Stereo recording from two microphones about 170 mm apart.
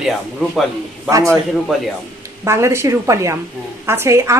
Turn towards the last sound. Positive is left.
turn(degrees=-15)  # may be behind; listen again after turning